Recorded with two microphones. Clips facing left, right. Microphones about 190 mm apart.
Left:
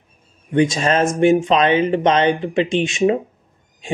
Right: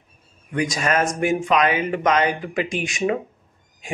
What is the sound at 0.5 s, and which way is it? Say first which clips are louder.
Speech: left 6 dB; 25° left (ahead or behind).